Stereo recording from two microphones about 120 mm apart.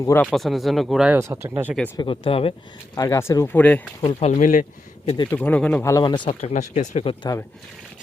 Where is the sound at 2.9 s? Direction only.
30° left (ahead or behind).